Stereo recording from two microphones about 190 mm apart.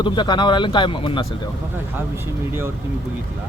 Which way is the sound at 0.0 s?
25° left (ahead or behind).